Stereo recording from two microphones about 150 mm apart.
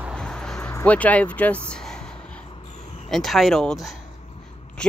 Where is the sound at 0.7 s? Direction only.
10° left (ahead or behind).